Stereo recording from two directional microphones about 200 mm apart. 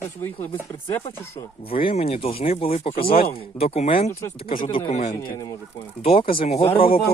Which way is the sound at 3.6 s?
30° left (ahead or behind).